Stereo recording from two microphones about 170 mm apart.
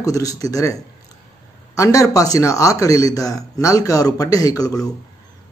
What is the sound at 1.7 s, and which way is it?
Speech, 20° left (ahead or behind).